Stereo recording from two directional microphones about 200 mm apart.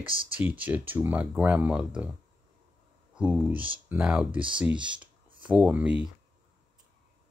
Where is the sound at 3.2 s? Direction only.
5° right (ahead or behind).